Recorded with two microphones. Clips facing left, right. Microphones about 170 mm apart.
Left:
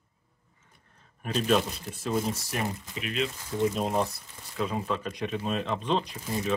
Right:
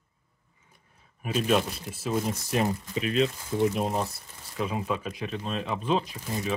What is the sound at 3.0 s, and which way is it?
Speech, 35° right (ahead or behind).